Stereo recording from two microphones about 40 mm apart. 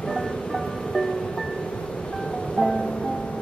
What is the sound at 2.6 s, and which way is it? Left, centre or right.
Music, centre.